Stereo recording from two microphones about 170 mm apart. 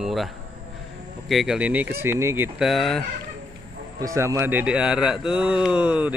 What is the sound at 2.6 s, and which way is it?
Speech, centre (ahead or behind).